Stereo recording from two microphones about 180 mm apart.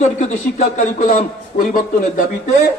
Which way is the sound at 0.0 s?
40° left (ahead or behind).